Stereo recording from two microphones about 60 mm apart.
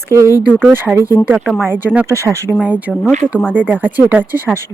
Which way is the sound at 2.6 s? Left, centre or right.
Right.